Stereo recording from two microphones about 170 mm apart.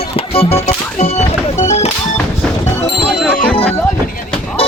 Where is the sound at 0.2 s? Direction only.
35° left (ahead or behind).